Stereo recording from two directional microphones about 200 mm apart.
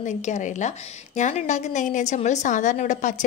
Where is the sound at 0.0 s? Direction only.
35° left (ahead or behind).